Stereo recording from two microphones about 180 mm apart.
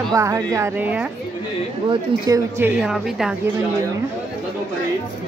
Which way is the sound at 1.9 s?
20° right (ahead or behind).